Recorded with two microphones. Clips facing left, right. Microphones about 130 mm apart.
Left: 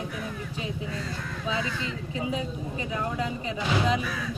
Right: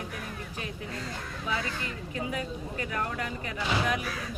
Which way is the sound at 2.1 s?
20° left (ahead or behind).